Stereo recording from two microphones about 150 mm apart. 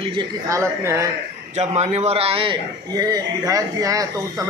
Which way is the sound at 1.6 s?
45° right (ahead or behind).